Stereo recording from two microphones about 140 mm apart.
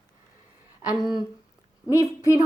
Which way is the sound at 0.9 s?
30° left (ahead or behind).